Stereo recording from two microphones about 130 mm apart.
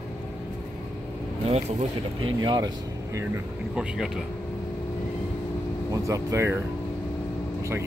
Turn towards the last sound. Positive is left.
turn(degrees=-20)  # may be behind; listen again after turning